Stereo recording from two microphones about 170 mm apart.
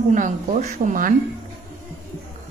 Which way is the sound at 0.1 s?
45° right (ahead or behind).